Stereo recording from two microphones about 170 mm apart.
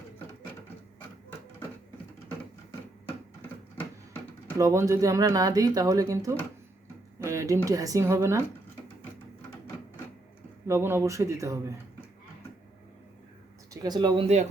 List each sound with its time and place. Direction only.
4.5 s speech: 20° right (ahead or behind)
10.7 s speech: 15° right (ahead or behind)
13.8 s speech: 25° right (ahead or behind)